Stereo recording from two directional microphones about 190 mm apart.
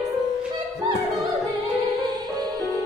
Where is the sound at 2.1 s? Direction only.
20° right (ahead or behind).